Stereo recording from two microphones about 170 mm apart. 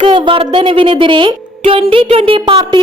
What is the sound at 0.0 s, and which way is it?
Speech, 30° right (ahead or behind).